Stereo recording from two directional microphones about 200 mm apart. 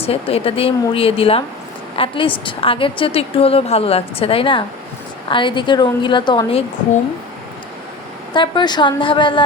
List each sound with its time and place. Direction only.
0.0 s a woman's voice: 30° left (ahead or behind)
8.3 s a woman's voice: 25° left (ahead or behind)